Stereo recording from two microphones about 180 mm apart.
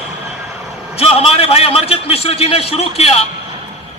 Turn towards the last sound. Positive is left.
turn(degrees=35)  # may be behind; listen again after turning